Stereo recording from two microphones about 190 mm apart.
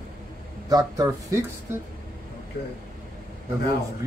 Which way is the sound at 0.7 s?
20° right (ahead or behind).